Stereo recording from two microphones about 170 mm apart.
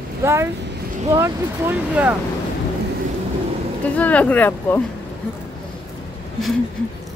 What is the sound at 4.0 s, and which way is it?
Speech, 10° left (ahead or behind).